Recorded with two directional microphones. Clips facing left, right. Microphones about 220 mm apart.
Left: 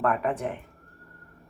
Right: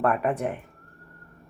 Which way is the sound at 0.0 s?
Centre (ahead or behind).